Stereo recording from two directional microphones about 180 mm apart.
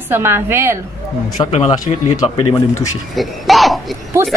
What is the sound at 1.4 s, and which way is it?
Speech, 25° left (ahead or behind).